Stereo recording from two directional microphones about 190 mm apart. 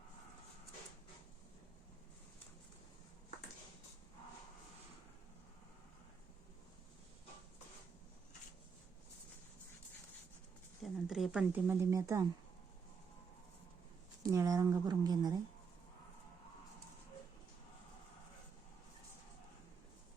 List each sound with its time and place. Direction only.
10.8 s speech: centre (ahead or behind); by 12.3 s 20° right (ahead or behind)
14.3 s speech: 15° right (ahead or behind)